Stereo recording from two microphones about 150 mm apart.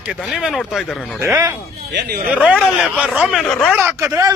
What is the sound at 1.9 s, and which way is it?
Speech, 90° right.